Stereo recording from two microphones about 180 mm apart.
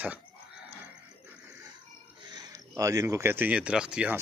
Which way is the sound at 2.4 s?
20° right (ahead or behind).